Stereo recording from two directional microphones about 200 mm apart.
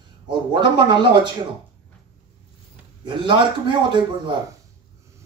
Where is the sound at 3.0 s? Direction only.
25° right (ahead or behind).